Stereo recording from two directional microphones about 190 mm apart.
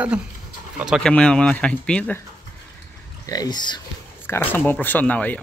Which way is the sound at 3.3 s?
20° left (ahead or behind).